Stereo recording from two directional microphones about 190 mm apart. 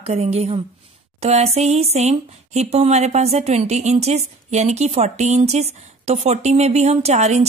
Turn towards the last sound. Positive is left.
turn(degrees=-35)  # may be behind; listen again after turning